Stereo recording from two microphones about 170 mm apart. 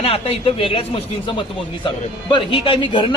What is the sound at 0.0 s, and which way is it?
A man's voice, 35° left (ahead or behind).